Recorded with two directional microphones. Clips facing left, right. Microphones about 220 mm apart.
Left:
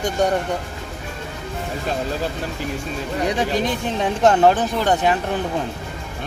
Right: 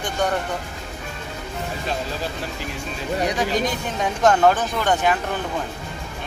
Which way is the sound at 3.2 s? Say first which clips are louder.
Left 2 dB; 30° left (ahead or behind).